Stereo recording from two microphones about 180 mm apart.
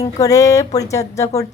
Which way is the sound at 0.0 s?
20° left (ahead or behind).